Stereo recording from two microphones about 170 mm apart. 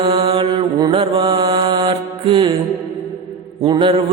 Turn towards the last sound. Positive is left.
turn(degrees=-30)  # may be behind; listen again after turning